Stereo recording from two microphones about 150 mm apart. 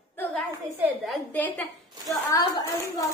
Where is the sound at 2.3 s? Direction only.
25° left (ahead or behind).